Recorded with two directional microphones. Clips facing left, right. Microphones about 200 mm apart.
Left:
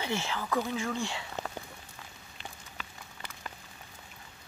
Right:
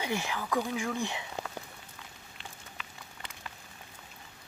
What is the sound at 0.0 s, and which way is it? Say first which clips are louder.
Speech: even; 15° right (ahead or behind).